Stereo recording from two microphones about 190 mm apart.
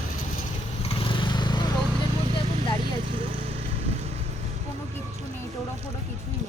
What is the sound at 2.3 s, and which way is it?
Vehicle, 25° left (ahead or behind).